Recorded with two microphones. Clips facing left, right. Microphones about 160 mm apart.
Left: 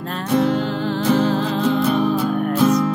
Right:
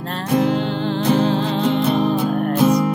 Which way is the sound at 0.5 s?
30° right (ahead or behind).